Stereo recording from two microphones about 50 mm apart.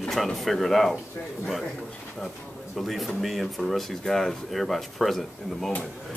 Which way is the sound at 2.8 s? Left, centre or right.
Centre.